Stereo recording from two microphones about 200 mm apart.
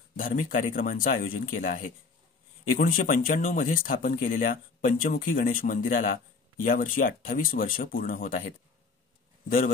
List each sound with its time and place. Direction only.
0.1 s speech: 45° left (ahead or behind)